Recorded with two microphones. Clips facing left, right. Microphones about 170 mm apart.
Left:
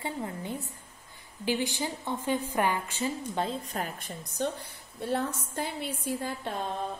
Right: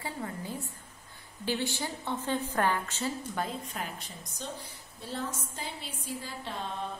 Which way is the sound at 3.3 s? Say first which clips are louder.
Left 3 dB; 25° left (ahead or behind).